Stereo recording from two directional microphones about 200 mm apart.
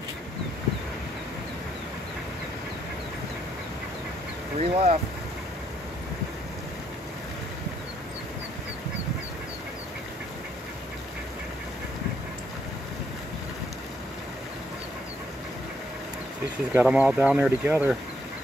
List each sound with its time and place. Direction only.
4.6 s speech: 30° right (ahead or behind)
16.7 s speech: 5° right (ahead or behind)